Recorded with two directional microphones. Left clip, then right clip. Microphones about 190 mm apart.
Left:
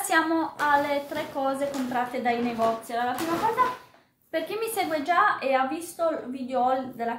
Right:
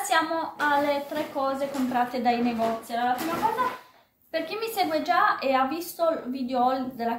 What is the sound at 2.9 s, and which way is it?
Child singing, 25° left (ahead or behind).